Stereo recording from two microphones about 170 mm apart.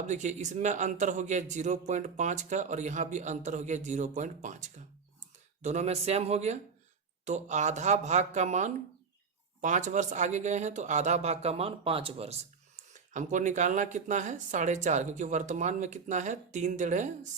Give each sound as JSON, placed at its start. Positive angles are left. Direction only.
{"t": 0.1, "sound": "speech", "side_deg": -45}